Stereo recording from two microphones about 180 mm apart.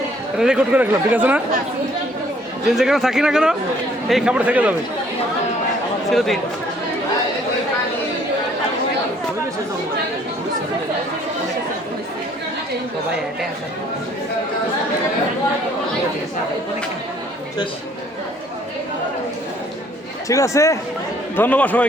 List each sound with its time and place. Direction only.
0.3 s speech: 5° right (ahead or behind)
2.7 s speech: centre (ahead or behind)
6.1 s speech: centre (ahead or behind)
20.2 s speech: 15° left (ahead or behind)